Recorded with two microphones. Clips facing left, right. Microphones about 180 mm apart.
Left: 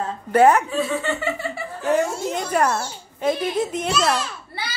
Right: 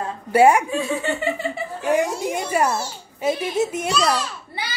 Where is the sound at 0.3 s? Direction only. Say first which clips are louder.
Right 1 dB; 10° right (ahead or behind).